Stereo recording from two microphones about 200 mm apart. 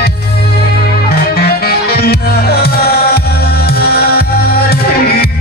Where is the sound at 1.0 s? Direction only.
50° left (ahead or behind).